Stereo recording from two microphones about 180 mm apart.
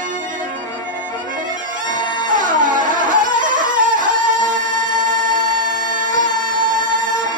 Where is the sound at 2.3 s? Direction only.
45° right (ahead or behind).